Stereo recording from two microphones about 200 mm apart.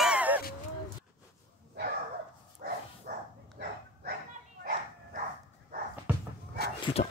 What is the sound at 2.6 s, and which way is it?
Dog, 45° right (ahead or behind).